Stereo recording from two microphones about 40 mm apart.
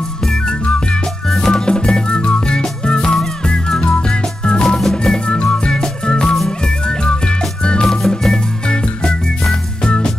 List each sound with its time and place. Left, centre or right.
0.3 s music: left
4.7 s music: centre
5.1 s music: left